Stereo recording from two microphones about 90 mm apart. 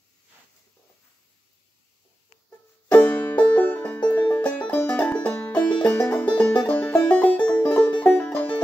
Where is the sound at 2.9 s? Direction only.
20° left (ahead or behind).